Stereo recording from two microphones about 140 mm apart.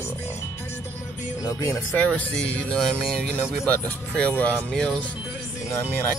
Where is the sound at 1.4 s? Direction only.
25° left (ahead or behind).